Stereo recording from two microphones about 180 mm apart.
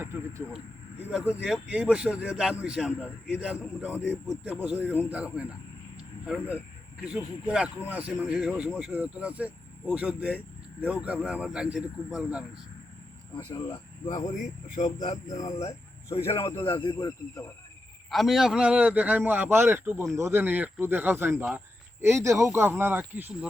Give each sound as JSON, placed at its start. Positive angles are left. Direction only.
{"t": 0.0, "sound": "a sound", "side_deg": -15}
{"t": 1.4, "sound": "a man's voice", "side_deg": -5}
{"t": 14.3, "sound": "speech", "side_deg": 40}
{"t": 18.1, "sound": "speech", "side_deg": 0}